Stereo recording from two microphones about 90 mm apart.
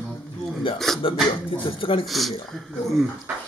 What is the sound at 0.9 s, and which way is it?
Speech, 5° left (ahead or behind).